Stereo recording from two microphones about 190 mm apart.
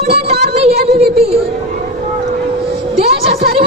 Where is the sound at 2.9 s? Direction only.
35° right (ahead or behind).